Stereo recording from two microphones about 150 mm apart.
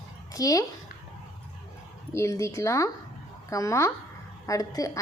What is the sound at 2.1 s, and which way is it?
A woman's voice, 20° left (ahead or behind).